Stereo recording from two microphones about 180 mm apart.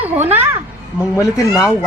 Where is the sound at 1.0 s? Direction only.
15° left (ahead or behind).